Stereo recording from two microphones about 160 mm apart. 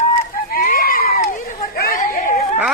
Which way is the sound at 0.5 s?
60° left (ahead or behind).